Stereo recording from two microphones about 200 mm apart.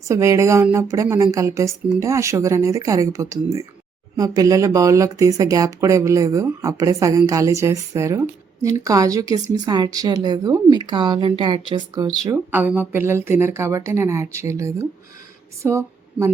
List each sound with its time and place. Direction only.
0.1 s a woman's voice: 15° right (ahead or behind)